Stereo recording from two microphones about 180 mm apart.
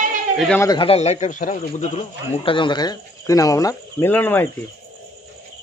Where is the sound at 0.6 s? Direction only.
25° left (ahead or behind); by 2.0 s 40° left (ahead or behind).